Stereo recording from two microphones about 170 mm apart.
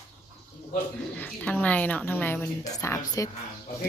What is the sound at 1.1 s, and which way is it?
A woman's voice, 10° left (ahead or behind).